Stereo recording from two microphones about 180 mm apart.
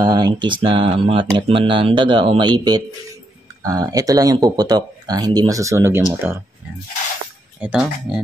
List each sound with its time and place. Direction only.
0.0 s speech: 25° right (ahead or behind)
7.6 s speech: 5° right (ahead or behind)